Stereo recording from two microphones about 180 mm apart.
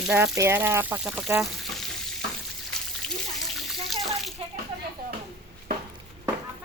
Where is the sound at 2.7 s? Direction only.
5° left (ahead or behind).